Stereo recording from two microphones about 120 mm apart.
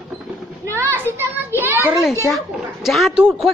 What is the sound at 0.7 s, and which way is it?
A child's voice, 20° right (ahead or behind).